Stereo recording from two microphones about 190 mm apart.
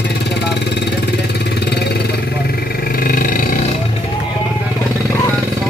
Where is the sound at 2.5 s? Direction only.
50° left (ahead or behind).